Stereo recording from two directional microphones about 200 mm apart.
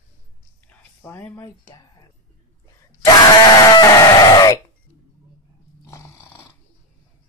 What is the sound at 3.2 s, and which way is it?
Sheep, 20° left (ahead or behind).